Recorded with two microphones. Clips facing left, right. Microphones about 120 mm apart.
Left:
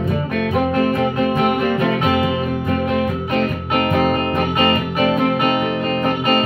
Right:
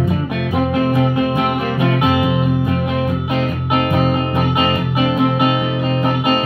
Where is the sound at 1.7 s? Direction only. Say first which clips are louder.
Right 1 dB; 10° right (ahead or behind).